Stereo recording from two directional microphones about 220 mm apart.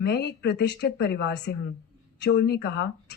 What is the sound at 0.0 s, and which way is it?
Speech, 50° left (ahead or behind).